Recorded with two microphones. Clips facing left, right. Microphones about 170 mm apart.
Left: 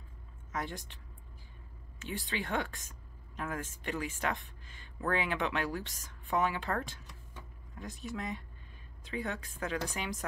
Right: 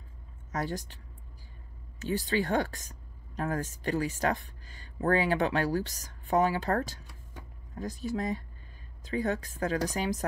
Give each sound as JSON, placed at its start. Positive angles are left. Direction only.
{"t": 0.5, "sound": "speech", "side_deg": -40}
{"t": 2.0, "sound": "speech", "side_deg": -40}